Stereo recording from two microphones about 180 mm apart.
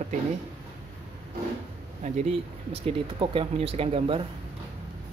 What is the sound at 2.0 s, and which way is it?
Speech, 35° right (ahead or behind).